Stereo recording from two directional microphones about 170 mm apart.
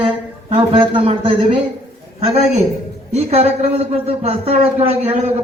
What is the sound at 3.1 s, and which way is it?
A man's voice, 40° right (ahead or behind).